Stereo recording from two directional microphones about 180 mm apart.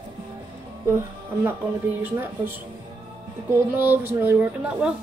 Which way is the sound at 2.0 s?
10° right (ahead or behind).